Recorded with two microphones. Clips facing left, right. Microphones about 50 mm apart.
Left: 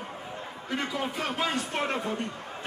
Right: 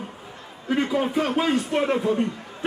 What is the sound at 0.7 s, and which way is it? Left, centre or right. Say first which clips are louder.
A man's voice: right 9 dB; right.